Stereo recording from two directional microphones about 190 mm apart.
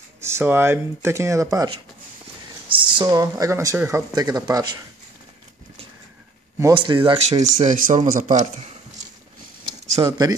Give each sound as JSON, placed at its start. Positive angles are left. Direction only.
{"t": 0.2, "sound": "speech", "side_deg": -15}
{"t": 6.6, "sound": "speech", "side_deg": -25}
{"t": 7.6, "sound": "speech", "side_deg": -45}
{"t": 9.7, "sound": "a sound", "side_deg": -20}